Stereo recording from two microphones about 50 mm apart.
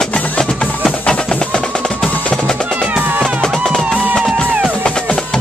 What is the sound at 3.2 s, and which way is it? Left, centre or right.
Music, centre.